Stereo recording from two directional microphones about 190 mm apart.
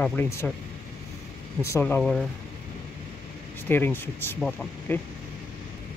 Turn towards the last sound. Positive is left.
turn(degrees=10)  # may be behind; listen again after turning